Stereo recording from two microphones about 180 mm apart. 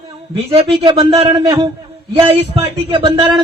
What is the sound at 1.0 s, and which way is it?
Speech, 15° right (ahead or behind).